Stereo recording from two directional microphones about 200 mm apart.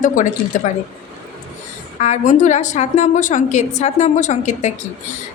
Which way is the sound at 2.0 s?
40° left (ahead or behind).